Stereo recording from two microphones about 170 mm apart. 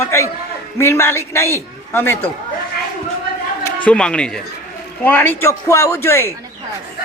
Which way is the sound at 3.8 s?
5° left (ahead or behind).